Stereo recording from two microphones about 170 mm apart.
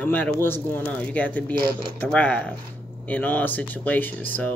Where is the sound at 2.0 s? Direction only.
10° left (ahead or behind).